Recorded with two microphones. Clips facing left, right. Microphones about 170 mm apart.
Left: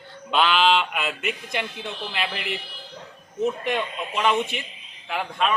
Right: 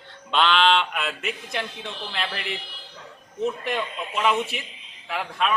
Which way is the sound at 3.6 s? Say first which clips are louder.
Left 2 dB; centre (ahead or behind).